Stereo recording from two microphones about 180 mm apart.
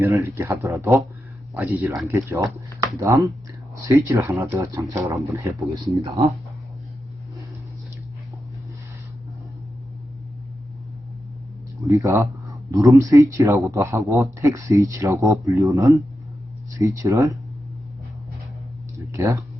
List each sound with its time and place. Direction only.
0.0 s speech: 15° right (ahead or behind)
11.9 s speech: 15° right (ahead or behind)
19.1 s speech: 15° right (ahead or behind)